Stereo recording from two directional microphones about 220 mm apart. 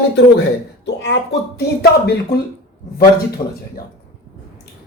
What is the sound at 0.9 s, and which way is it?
Speech, 55° left (ahead or behind).